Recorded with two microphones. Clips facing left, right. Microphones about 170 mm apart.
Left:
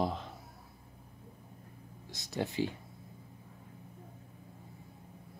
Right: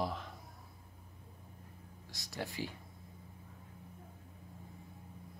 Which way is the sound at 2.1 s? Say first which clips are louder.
Left 7 dB; 20° left (ahead or behind).